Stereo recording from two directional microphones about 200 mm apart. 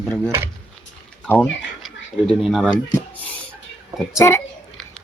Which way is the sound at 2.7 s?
20° left (ahead or behind).